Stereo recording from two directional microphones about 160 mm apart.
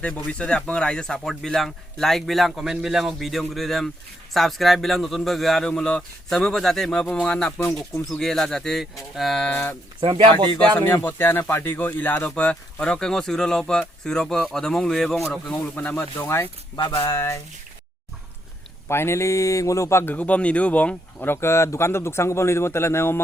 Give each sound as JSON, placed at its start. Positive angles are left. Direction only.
{"t": 0.3, "sound": "speech", "side_deg": 5}
{"t": 10.0, "sound": "speech", "side_deg": -35}
{"t": 10.8, "sound": "a man's voice", "side_deg": 15}
{"t": 18.9, "sound": "a man's voice", "side_deg": 15}